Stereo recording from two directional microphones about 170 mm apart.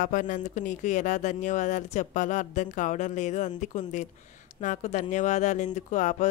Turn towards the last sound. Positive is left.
turn(degrees=45)  # may be behind; listen again after turning